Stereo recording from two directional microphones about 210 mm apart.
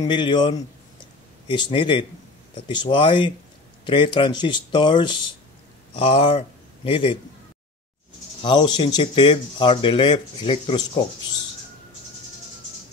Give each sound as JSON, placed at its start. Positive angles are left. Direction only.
{"t": 0.0, "sound": "speech", "side_deg": 20}
{"t": 8.4, "sound": "speech", "side_deg": 20}